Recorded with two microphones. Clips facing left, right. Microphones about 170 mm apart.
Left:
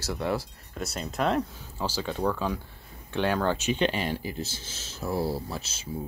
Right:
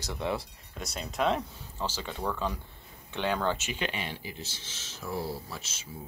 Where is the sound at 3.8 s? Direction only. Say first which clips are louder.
Left 8 dB; 40° left (ahead or behind).